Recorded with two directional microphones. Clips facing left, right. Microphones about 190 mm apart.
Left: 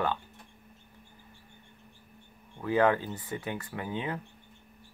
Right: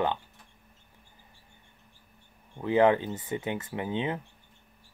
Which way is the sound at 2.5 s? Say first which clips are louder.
Right 3 dB; 20° right (ahead or behind).